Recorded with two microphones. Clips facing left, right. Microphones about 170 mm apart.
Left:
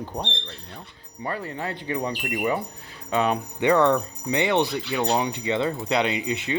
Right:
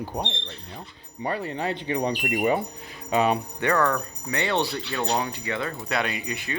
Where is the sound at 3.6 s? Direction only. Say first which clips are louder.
Left 6 dB; 20° left (ahead or behind).